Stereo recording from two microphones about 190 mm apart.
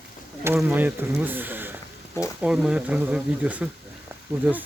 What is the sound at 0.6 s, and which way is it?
Speech, 10° right (ahead or behind).